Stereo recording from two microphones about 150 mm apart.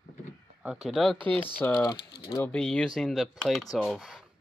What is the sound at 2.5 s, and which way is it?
Speech, 5° left (ahead or behind).